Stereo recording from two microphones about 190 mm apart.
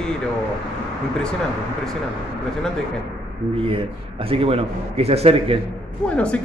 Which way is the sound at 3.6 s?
30° right (ahead or behind).